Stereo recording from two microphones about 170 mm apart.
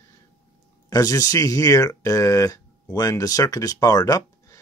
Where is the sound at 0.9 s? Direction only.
20° left (ahead or behind).